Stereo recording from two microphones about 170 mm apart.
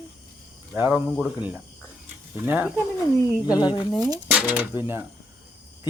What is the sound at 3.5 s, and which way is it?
Speech, 25° left (ahead or behind).